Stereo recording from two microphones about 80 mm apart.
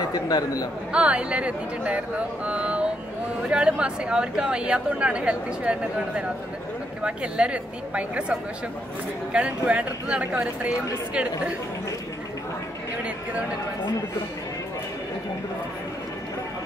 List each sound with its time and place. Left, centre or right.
0.1 s speech: left
0.9 s speech: centre